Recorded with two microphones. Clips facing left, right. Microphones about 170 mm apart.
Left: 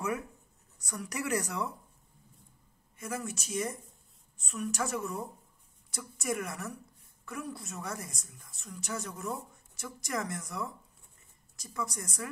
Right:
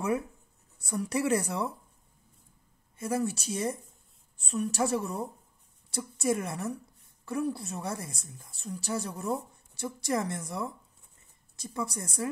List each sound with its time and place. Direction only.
0.7 s speech: 30° right (ahead or behind)
3.0 s a woman's voice: 30° right (ahead or behind)